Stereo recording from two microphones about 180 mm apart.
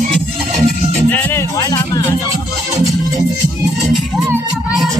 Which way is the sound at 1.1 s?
10° left (ahead or behind).